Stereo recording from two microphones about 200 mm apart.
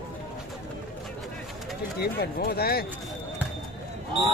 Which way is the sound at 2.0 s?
50° left (ahead or behind).